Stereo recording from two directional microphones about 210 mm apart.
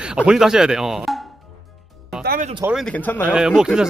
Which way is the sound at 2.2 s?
40° right (ahead or behind).